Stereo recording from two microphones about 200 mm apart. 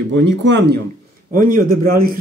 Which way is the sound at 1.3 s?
45° right (ahead or behind).